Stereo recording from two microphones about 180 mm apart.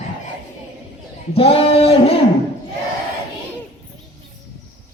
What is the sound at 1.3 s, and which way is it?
Speech, 35° left (ahead or behind).